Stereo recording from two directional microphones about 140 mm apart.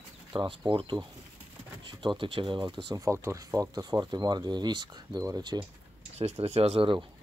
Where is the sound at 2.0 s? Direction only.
35° right (ahead or behind).